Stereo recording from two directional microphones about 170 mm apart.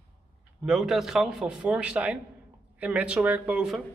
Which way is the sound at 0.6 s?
5° right (ahead or behind).